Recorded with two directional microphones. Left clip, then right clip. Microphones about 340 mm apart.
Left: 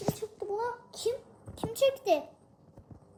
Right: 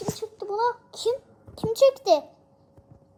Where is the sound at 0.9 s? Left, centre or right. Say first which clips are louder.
Right 6 dB; right.